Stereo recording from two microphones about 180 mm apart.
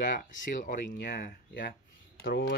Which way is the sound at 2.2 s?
75° left (ahead or behind).